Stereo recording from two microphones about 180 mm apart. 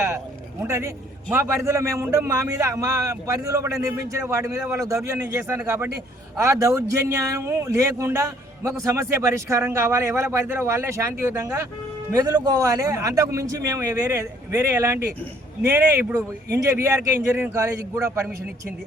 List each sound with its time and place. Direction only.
0.6 s a man's voice: 15° right (ahead or behind)